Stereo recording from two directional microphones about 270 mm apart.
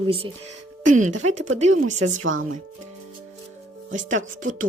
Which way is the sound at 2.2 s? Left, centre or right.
Right.